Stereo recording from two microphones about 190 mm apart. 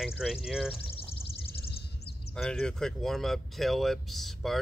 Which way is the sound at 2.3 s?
5° left (ahead or behind).